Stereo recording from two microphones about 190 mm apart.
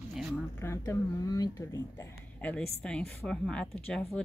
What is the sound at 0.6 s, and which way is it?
A woman's voice, 15° left (ahead or behind).